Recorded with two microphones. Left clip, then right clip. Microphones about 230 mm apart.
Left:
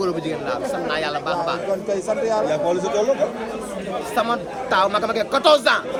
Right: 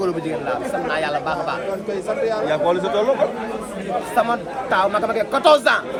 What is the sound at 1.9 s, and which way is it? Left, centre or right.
Speech, left.